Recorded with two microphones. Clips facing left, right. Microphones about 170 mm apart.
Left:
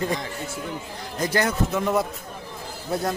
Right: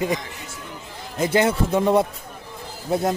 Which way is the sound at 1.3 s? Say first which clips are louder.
Right 4 dB; 25° right (ahead or behind).